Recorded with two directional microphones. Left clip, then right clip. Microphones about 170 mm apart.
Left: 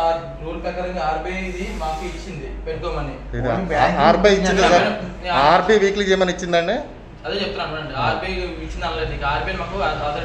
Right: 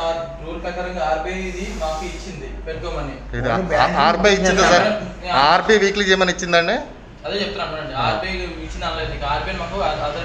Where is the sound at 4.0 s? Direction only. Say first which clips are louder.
Left 3 dB; 5° left (ahead or behind).